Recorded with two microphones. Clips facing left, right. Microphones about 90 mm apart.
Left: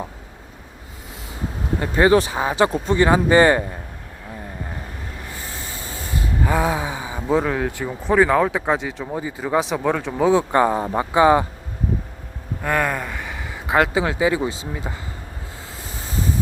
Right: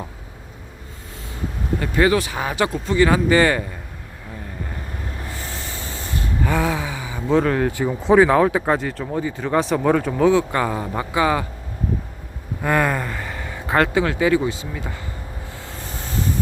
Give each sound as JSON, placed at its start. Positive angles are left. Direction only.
{"t": 1.8, "sound": "speech", "side_deg": 30}
{"t": 5.4, "sound": "a sound", "side_deg": -25}
{"t": 6.1, "sound": "gasp", "side_deg": 20}
{"t": 7.3, "sound": "speech", "side_deg": 5}
{"t": 10.2, "sound": "speech", "side_deg": 20}
{"t": 12.6, "sound": "speech", "side_deg": 0}